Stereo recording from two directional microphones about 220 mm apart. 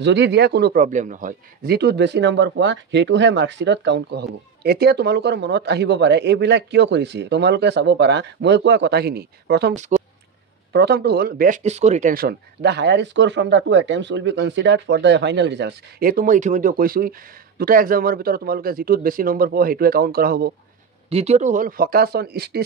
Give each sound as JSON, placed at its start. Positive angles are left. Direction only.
{"t": 0.0, "sound": "a man's voice", "side_deg": -50}
{"t": 9.8, "sound": "speech", "side_deg": -35}
{"t": 10.7, "sound": "a man's voice", "side_deg": -50}
{"t": 21.1, "sound": "speech", "side_deg": -30}